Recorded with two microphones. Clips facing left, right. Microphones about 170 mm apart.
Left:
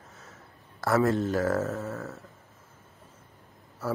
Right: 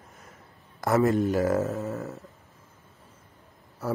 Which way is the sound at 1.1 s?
15° right (ahead or behind).